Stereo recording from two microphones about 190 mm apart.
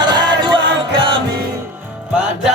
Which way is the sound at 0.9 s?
25° right (ahead or behind).